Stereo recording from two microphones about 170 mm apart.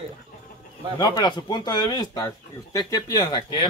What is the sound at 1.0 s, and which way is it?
Speech, 25° left (ahead or behind).